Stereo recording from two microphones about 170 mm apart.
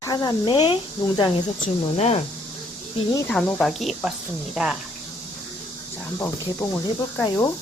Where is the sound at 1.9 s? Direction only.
40° left (ahead or behind).